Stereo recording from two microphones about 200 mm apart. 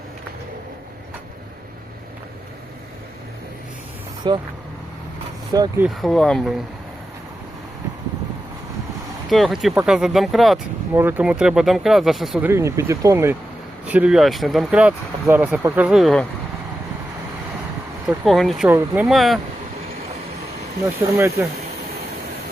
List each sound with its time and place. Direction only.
4.2 s speech: 20° right (ahead or behind)
5.5 s speech: 20° right (ahead or behind)
5.8 s speech: centre (ahead or behind)
9.3 s speech: centre (ahead or behind)
12.5 s speech: 15° right (ahead or behind)
18.1 s speech: centre (ahead or behind)
21.2 s speech: 15° right (ahead or behind)